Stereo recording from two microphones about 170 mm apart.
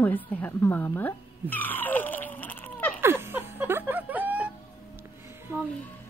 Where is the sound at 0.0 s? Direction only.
10° left (ahead or behind).